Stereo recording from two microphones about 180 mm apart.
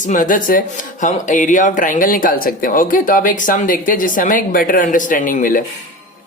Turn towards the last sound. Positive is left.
turn(degrees=50)  # may be behind; listen again after turning